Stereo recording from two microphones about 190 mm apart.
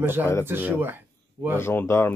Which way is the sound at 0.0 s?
10° right (ahead or behind).